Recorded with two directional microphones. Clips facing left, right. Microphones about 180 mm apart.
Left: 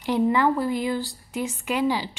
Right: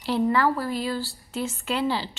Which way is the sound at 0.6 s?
20° left (ahead or behind).